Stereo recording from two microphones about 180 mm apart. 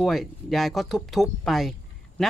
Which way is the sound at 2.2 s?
Centre (ahead or behind).